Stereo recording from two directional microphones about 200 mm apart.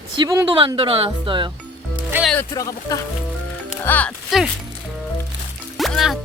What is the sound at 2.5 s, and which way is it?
Speech, 15° left (ahead or behind).